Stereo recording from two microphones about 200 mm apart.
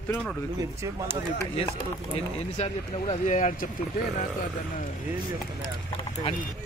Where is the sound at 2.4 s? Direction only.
30° left (ahead or behind).